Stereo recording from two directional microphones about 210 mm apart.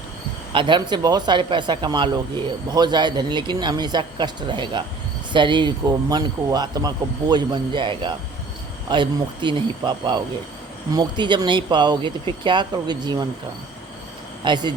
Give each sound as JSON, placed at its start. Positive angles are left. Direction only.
{"t": 0.5, "sound": "speech", "side_deg": -25}
{"t": 14.4, "sound": "speech", "side_deg": -20}